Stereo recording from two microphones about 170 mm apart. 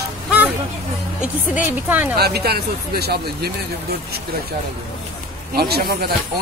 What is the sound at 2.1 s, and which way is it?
Speech, 65° right (ahead or behind).